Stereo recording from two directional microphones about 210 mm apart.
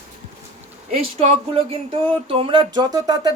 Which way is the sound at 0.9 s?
30° right (ahead or behind).